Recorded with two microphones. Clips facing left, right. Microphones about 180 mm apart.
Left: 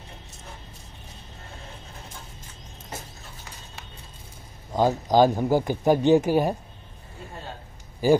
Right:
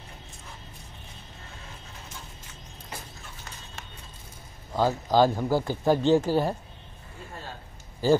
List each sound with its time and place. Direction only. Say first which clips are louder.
4.7 s speech: left 3 dB; 15° left (ahead or behind)
8.0 s speech: left 2 dB; 15° left (ahead or behind)